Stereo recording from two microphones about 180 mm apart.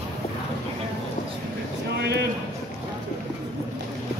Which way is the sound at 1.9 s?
65° right (ahead or behind).